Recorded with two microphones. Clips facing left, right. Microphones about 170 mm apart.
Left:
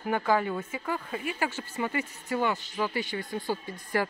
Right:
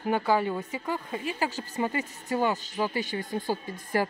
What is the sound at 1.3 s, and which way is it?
A woman's voice, 35° right (ahead or behind).